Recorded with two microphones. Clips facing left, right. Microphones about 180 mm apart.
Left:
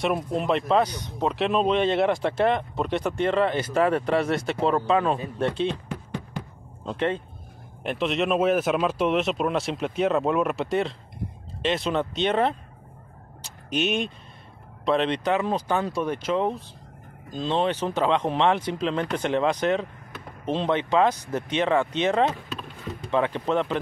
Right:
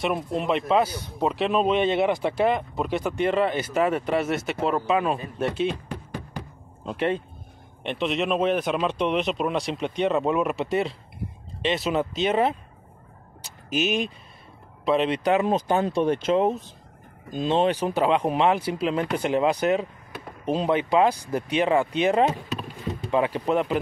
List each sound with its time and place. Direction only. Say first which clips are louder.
0.0 s speech: left 1 dB; centre (ahead or behind)
6.9 s speech: right 1 dB; 10° right (ahead or behind)
7.8 s speech: left 1 dB; centre (ahead or behind)
13.7 s speech: right 1 dB; centre (ahead or behind)